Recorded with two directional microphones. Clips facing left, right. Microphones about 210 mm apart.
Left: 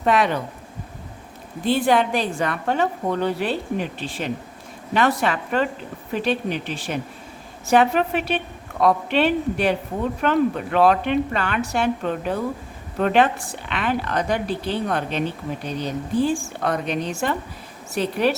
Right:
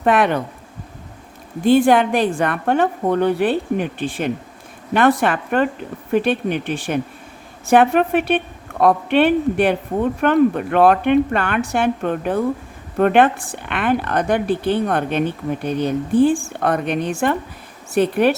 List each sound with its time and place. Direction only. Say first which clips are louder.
0.0 s speech: right 3 dB; 55° right (ahead or behind)
1.6 s a woman's voice: right 6 dB; 50° right (ahead or behind)